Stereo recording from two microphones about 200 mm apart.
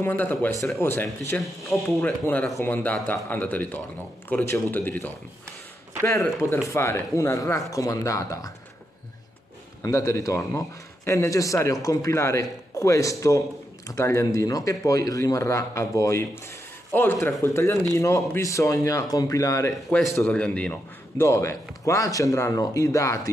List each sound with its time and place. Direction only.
0.0 s speech: 10° left (ahead or behind)
9.8 s speech: 15° left (ahead or behind)